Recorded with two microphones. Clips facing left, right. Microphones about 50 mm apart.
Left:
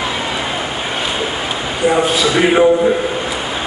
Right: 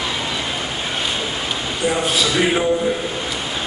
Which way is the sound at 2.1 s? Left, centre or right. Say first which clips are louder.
Left 5 dB; centre.